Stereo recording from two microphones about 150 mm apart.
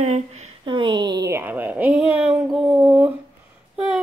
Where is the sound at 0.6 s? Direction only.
35° right (ahead or behind); by 3.1 s 10° right (ahead or behind).